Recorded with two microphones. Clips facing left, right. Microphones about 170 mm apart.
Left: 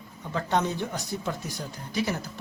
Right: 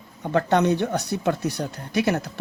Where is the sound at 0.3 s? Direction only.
65° right (ahead or behind).